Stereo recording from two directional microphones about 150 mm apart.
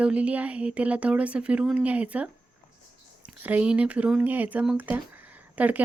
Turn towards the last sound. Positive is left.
turn(degrees=-10)  # may be behind; listen again after turning